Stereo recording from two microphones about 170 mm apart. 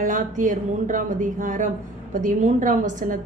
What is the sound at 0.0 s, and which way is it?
A woman's voice, 50° right (ahead or behind).